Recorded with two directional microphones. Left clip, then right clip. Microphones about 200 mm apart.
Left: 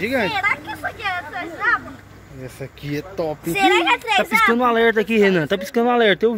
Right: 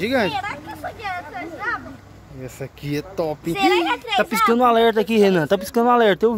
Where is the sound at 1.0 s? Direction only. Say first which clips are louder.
Left 3 dB; 5° right (ahead or behind).